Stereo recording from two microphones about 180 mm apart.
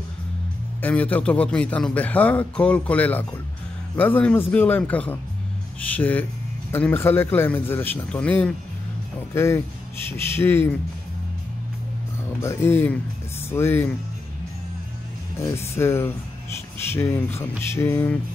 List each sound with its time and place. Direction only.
0.7 s a man's voice: 10° left (ahead or behind)
12.4 s a man's voice: 15° left (ahead or behind)
15.5 s a man's voice: 15° left (ahead or behind)